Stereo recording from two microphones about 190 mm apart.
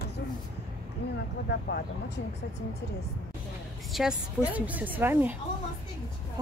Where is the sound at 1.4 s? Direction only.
55° left (ahead or behind).